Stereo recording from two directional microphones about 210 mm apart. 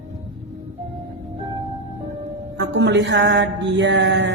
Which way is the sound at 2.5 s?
55° right (ahead or behind).